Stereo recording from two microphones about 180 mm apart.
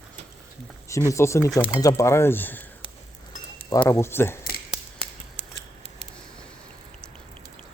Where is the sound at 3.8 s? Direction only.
15° left (ahead or behind).